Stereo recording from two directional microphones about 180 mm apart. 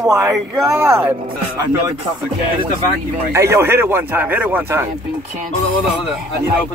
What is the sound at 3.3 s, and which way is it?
Speech, 15° right (ahead or behind).